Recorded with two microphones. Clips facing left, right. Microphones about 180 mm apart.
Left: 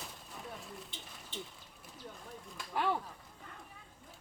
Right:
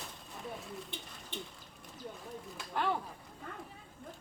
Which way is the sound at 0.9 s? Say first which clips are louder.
Right 2 dB; 60° right (ahead or behind).